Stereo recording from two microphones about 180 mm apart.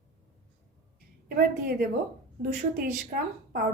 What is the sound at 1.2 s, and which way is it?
Speech, 55° right (ahead or behind).